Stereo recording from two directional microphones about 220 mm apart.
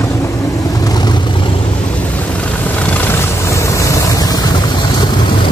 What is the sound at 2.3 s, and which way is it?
Vehicle, 5° left (ahead or behind).